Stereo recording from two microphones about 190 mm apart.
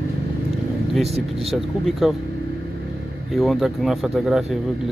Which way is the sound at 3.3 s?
Centre (ahead or behind).